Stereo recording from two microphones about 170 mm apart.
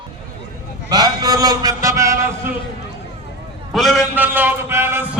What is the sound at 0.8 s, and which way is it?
A man's voice, 20° right (ahead or behind).